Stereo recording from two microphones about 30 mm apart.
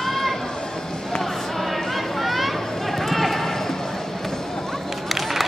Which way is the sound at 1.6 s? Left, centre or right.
Centre.